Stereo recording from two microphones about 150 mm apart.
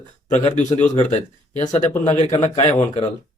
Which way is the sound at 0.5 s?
50° left (ahead or behind).